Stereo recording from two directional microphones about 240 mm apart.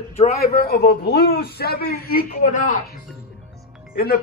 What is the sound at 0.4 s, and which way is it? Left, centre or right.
A man's voice, left.